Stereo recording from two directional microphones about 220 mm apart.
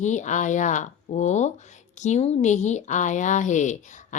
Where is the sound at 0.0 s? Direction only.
35° left (ahead or behind).